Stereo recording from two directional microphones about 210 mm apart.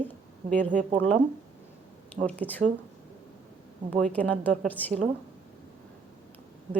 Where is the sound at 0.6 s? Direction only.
35° right (ahead or behind).